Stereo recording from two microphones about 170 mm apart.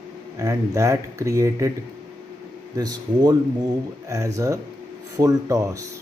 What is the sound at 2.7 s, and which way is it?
Speech, 20° right (ahead or behind).